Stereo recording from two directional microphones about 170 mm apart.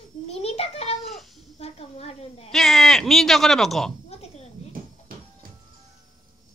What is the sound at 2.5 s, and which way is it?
Speech, centre (ahead or behind).